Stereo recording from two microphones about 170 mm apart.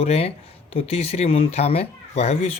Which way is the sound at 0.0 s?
35° left (ahead or behind).